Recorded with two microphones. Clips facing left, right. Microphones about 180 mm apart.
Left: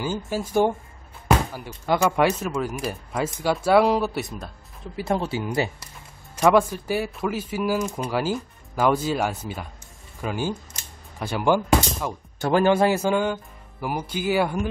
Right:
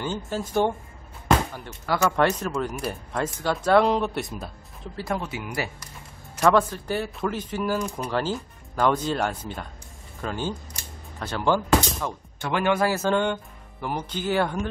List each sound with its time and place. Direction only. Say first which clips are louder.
0.0 s speech: left 2 dB; 5° left (ahead or behind)
5.0 s speech: left 5 dB; 30° left (ahead or behind)
6.3 s speech: left 2 dB; 10° left (ahead or behind)
12.4 s speech: left 5 dB; 40° left (ahead or behind)
12.8 s speech: left 2 dB; 15° left (ahead or behind)